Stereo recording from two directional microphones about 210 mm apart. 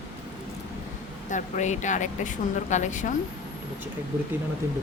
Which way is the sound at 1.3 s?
35° left (ahead or behind).